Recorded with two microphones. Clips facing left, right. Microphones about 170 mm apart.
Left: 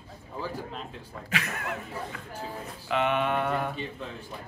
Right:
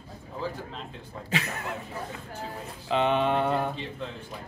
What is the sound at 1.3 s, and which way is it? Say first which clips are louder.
Speech: right 2 dB; 30° right (ahead or behind).